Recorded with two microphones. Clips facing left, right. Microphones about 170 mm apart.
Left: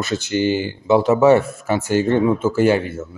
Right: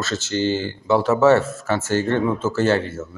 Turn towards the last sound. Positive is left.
turn(degrees=15)  # may be behind; listen again after turning